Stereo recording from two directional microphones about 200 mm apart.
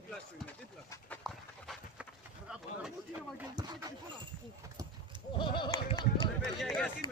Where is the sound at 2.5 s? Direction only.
5° right (ahead or behind).